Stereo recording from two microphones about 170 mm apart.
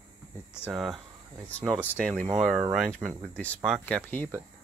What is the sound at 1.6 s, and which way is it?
Speech, 10° left (ahead or behind).